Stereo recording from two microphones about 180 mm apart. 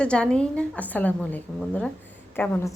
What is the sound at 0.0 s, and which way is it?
A woman's voice, 5° left (ahead or behind).